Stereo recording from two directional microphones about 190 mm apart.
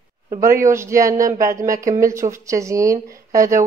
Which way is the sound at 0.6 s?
15° right (ahead or behind).